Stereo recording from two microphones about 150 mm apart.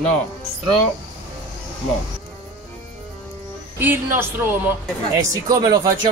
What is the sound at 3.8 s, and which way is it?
Speech, 15° right (ahead or behind).